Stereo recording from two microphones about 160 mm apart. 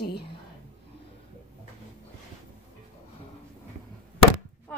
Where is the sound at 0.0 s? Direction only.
85° left.